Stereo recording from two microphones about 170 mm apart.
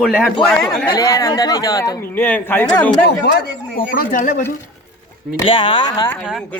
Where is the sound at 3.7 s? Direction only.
55° left (ahead or behind).